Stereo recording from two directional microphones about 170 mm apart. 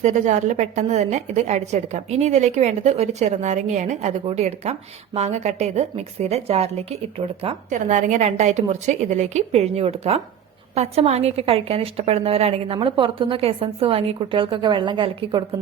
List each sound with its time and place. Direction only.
0.0 s a woman's voice: 45° right (ahead or behind); by 15.4 s 30° right (ahead or behind)